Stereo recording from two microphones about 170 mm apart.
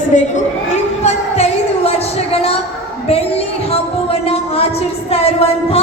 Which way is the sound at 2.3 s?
35° left (ahead or behind).